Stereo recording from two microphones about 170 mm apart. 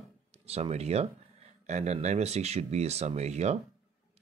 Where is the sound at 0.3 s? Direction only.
35° right (ahead or behind).